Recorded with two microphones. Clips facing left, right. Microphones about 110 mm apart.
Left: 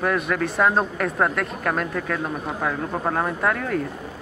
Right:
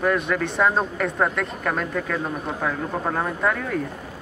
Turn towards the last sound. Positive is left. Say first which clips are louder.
# left 1 dB
turn(degrees=0)  # may be behind; listen again after turning